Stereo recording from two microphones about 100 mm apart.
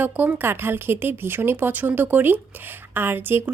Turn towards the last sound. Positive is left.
turn(degrees=-20)  # may be behind; listen again after turning